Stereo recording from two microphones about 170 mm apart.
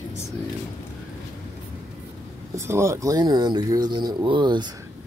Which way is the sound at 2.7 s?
15° right (ahead or behind).